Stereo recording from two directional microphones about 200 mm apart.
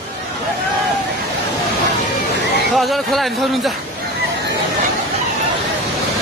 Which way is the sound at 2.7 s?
Centre (ahead or behind).